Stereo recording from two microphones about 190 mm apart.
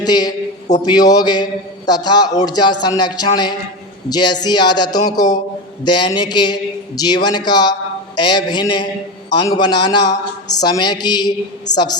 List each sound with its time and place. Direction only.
0.0 s a man's voice: 20° left (ahead or behind)